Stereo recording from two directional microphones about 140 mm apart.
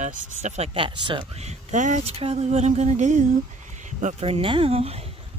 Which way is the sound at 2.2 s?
50° right (ahead or behind).